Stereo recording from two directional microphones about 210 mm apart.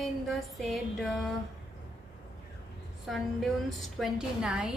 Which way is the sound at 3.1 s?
Centre (ahead or behind).